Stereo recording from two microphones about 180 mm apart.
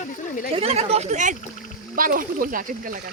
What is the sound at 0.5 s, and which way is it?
Speech, 35° right (ahead or behind).